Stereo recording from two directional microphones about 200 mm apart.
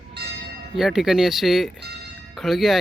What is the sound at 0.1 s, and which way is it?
Church bell, 55° right (ahead or behind).